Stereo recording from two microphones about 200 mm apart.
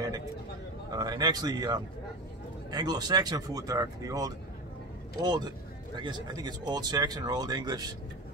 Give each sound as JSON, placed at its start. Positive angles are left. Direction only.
{"t": 0.9, "sound": "speech", "side_deg": -20}